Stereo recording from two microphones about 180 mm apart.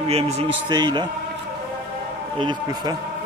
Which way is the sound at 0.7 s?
25° right (ahead or behind).